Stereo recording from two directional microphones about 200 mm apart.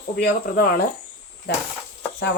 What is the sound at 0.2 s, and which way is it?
Speech, 50° left (ahead or behind).